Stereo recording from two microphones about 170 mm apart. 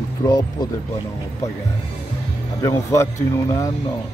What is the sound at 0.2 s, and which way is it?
Speech, 25° left (ahead or behind).